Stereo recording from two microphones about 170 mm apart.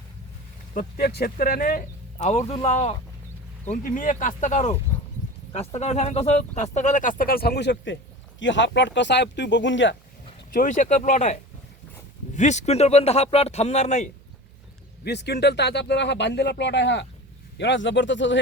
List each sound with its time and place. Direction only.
0.7 s speech: 55° left (ahead or behind)
2.1 s speech: 40° left (ahead or behind)
3.7 s speech: 50° left (ahead or behind); by 9.9 s 90° left
10.5 s speech: 50° left (ahead or behind)
12.4 s speech: 45° left (ahead or behind)
15.0 s speech: 75° left (ahead or behind); by 18.3 s 90° left